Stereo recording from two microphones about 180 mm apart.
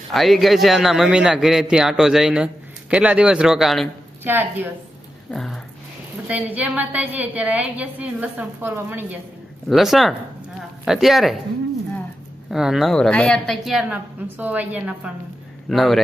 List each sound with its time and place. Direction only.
0.1 s a woman's voice: centre (ahead or behind)
5.3 s a woman's voice: centre (ahead or behind)
6.2 s a woman's voice: 10° right (ahead or behind)
9.6 s a woman's voice: centre (ahead or behind)
12.5 s a woman's voice: centre (ahead or behind)